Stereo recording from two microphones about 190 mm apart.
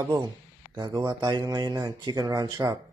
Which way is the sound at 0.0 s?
20° right (ahead or behind).